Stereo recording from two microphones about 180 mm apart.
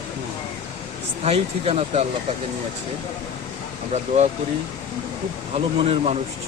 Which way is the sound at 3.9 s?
35° right (ahead or behind).